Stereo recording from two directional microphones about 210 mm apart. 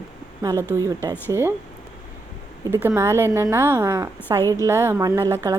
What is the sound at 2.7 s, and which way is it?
A woman's voice, 10° right (ahead or behind).